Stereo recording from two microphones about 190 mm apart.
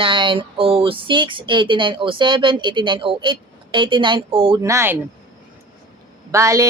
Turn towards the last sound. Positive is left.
turn(degrees=-15)  # may be behind; listen again after turning